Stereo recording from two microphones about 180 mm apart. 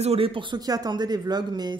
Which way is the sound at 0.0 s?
30° right (ahead or behind).